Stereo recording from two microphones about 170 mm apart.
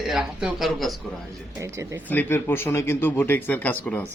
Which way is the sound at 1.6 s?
15° right (ahead or behind).